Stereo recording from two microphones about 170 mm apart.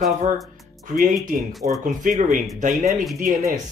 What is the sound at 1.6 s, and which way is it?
Speech, 55° right (ahead or behind).